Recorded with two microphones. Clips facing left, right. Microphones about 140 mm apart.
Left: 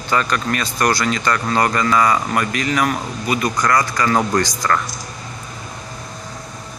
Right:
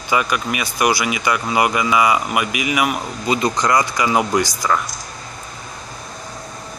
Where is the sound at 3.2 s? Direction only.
20° right (ahead or behind).